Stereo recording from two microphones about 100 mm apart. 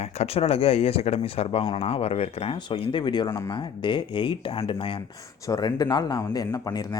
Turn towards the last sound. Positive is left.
turn(degrees=35)  # may be behind; listen again after turning